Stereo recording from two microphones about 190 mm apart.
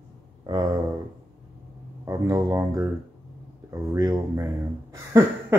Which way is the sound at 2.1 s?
15° right (ahead or behind).